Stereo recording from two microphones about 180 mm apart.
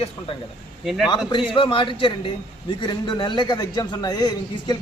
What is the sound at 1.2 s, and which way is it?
A man's voice, 25° left (ahead or behind).